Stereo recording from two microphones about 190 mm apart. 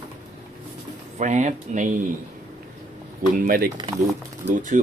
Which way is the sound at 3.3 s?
45° right (ahead or behind).